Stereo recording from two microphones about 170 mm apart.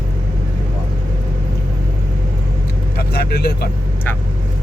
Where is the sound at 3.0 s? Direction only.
65° left (ahead or behind).